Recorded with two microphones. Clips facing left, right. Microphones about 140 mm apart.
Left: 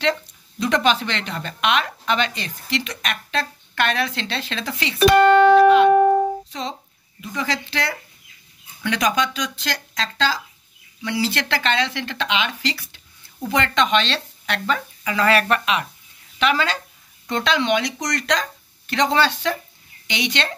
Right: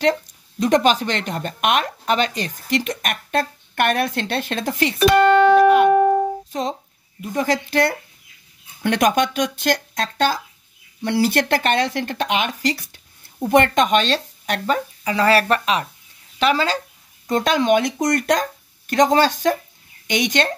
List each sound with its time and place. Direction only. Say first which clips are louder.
0.0 s speech: right 3 dB; 45° right (ahead or behind)
5.5 s music: even; 45° right (ahead or behind)
6.5 s speech: right 5 dB; 45° right (ahead or behind)